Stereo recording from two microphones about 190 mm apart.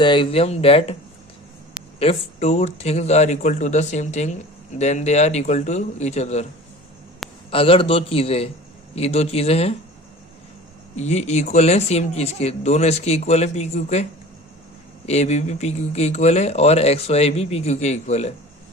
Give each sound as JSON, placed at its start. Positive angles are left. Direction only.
{"t": 0.0, "sound": "speech", "side_deg": 25}
{"t": 2.0, "sound": "speech", "side_deg": 30}
{"t": 7.5, "sound": "a man's voice", "side_deg": 30}
{"t": 10.9, "sound": "speech", "side_deg": 35}